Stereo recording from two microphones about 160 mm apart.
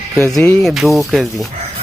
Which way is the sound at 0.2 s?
5° left (ahead or behind).